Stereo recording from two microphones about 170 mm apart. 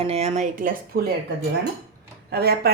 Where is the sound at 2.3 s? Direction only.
70° right (ahead or behind).